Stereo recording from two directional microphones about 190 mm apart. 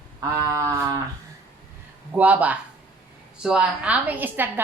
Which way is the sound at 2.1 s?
10° right (ahead or behind).